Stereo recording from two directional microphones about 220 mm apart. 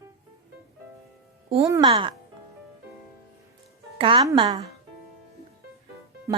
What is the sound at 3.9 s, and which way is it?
Speech, 25° right (ahead or behind).